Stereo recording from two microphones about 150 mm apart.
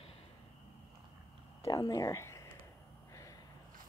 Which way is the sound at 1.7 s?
25° left (ahead or behind).